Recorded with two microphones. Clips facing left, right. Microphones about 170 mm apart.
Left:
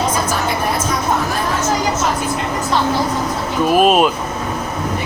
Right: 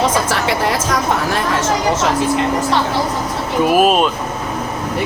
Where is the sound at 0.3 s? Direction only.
85° right.